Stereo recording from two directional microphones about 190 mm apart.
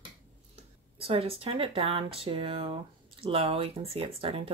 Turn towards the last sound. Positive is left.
turn(degrees=-30)  # may be behind; listen again after turning